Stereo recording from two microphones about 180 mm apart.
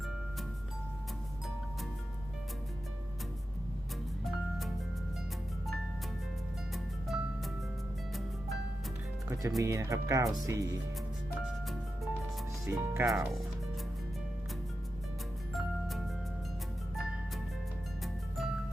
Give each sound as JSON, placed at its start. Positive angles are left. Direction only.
{"t": 4.2, "sound": "music", "side_deg": 0}
{"t": 6.7, "sound": "music", "side_deg": 0}
{"t": 9.6, "sound": "speech", "side_deg": -15}
{"t": 12.6, "sound": "speech", "side_deg": -15}
{"t": 13.1, "sound": "speech", "side_deg": 0}
{"t": 15.5, "sound": "music", "side_deg": 0}